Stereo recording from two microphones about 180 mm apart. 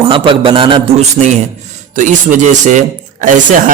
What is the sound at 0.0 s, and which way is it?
A man's voice, 30° right (ahead or behind).